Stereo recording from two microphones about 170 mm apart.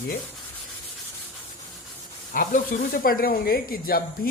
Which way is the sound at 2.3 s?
55° left (ahead or behind).